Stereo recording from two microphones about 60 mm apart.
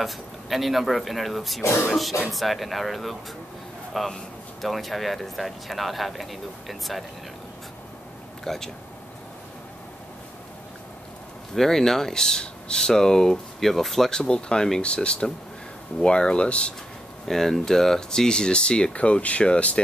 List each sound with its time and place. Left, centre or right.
0.0 s a man's voice: centre
8.5 s speech: centre
11.5 s speech: centre
17.3 s speech: centre